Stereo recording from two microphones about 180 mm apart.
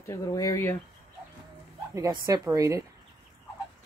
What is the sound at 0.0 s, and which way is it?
Speech, 15° left (ahead or behind).